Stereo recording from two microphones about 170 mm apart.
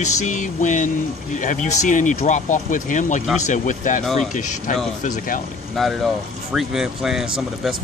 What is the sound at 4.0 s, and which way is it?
Speech, centre (ahead or behind).